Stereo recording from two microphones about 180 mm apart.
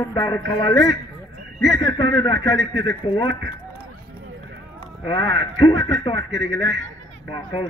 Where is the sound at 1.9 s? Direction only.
25° left (ahead or behind).